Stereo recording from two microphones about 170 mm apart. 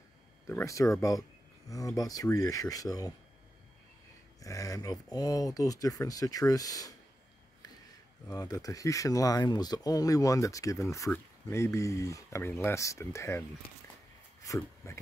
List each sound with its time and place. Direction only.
0.5 s speech: 15° left (ahead or behind)
4.4 s speech: 20° left (ahead or behind)
8.3 s speech: 20° left (ahead or behind)
14.4 s speech: 20° left (ahead or behind)